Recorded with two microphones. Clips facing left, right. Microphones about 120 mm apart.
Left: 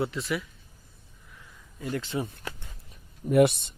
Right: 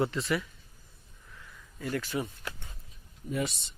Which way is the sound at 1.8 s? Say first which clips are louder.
Left 1 dB; 20° left (ahead or behind).